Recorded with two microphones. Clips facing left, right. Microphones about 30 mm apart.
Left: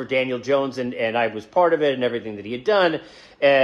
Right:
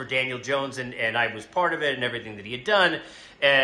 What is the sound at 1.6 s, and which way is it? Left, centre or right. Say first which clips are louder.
Speech: left 6 dB; centre.